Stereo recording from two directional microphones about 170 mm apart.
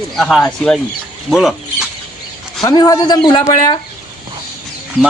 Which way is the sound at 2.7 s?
25° left (ahead or behind).